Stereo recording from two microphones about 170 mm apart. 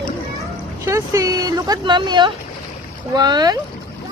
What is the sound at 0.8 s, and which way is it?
Vehicle, 20° right (ahead or behind).